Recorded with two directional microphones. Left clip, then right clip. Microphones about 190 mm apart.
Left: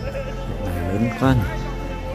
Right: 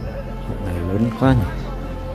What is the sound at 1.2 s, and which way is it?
Speech, 15° right (ahead or behind).